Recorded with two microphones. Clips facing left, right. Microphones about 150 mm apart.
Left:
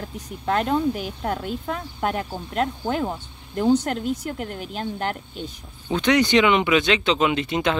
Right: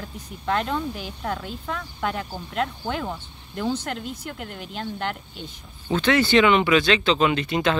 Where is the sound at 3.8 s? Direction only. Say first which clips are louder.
Left 6 dB; 45° left (ahead or behind).